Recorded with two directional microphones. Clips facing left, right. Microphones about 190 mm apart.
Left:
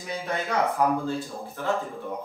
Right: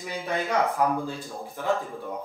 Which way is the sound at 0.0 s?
15° right (ahead or behind).